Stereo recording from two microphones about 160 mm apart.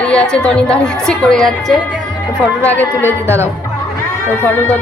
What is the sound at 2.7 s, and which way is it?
Speech, 10° left (ahead or behind).